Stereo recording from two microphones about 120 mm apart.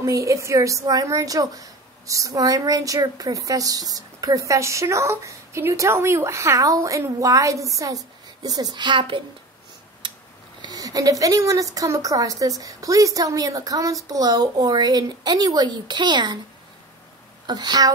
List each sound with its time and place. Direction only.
0.0 s speech: 25° right (ahead or behind); by 9.2 s 45° right (ahead or behind)
10.0 s a sound: 40° right (ahead or behind)
10.6 s speech: 30° right (ahead or behind)
17.5 s speech: 35° right (ahead or behind)